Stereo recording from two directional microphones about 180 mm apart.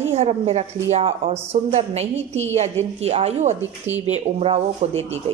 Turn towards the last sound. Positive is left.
turn(degrees=-35)  # may be behind; listen again after turning